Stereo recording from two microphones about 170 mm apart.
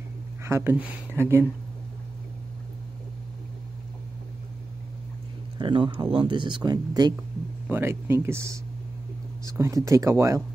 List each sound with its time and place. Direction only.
0.5 s speech: 15° right (ahead or behind)
5.6 s speech: 30° right (ahead or behind)
7.6 s speech: 15° right (ahead or behind)